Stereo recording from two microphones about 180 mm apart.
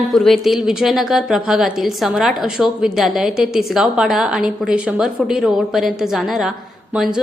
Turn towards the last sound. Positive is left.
turn(degrees=-5)  # may be behind; listen again after turning